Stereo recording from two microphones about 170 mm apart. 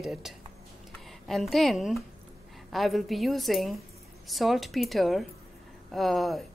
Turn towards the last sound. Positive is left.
turn(degrees=0)  # may be behind; listen again after turning